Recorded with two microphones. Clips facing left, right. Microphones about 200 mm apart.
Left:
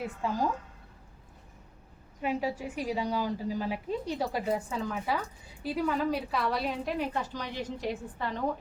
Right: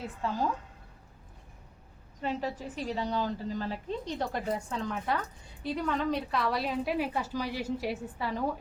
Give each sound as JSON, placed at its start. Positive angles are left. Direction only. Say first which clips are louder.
{"t": 0.0, "sound": "a woman's voice", "louder": "left 1 dB", "side_deg": 10}
{"t": 2.2, "sound": "a woman's voice", "louder": "left 2 dB", "side_deg": 10}